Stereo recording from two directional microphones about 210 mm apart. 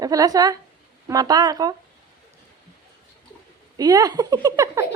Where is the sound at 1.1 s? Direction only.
20° right (ahead or behind).